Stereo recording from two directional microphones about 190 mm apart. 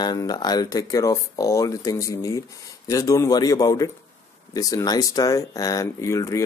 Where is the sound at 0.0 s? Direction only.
20° left (ahead or behind).